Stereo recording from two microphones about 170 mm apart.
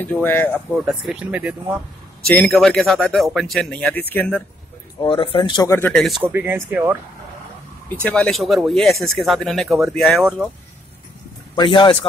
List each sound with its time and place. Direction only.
0.0 s speech: 10° left (ahead or behind)
0.8 s speech: 5° right (ahead or behind)
2.2 s speech: 5° left (ahead or behind)
5.0 s speech: 30° left (ahead or behind)
5.7 s speech: 15° left (ahead or behind)
5.9 s speech: centre (ahead or behind)
6.2 s speech: 10° right (ahead or behind)
7.9 s speech: 5° left (ahead or behind)
11.5 s speech: 30° left (ahead or behind)